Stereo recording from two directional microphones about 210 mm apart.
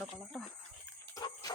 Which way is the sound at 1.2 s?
20° left (ahead or behind).